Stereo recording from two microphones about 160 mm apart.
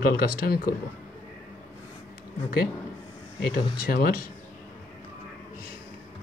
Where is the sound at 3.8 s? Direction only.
65° left (ahead or behind).